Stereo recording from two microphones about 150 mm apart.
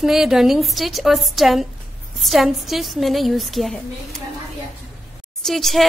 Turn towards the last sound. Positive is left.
turn(degrees=0)  # may be behind; listen again after turning